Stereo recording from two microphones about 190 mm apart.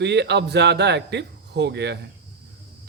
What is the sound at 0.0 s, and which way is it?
Speech, 65° right (ahead or behind).